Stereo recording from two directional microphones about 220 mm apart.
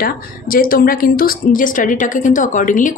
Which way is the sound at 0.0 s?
40° left (ahead or behind).